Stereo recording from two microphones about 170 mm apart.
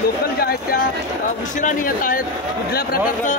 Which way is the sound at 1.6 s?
55° left (ahead or behind).